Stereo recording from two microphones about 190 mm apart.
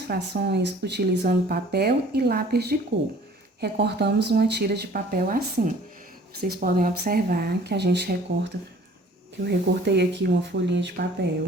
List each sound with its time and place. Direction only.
0.1 s speech: 60° right (ahead or behind)
9.4 s speech: 60° right (ahead or behind)